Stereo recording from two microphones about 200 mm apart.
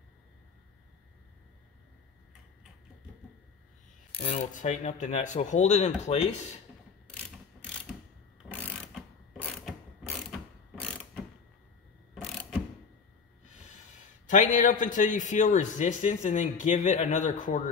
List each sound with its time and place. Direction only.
4.1 s a man's voice: 30° left (ahead or behind)
8.4 s mechanisms: 5° right (ahead or behind)
9.4 s mechanisms: 5° left (ahead or behind)
14.3 s a man's voice: 40° left (ahead or behind)